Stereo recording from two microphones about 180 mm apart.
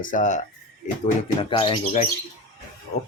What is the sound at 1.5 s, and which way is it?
Speech, 25° left (ahead or behind).